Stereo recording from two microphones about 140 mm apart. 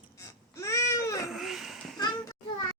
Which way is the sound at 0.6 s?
20° left (ahead or behind).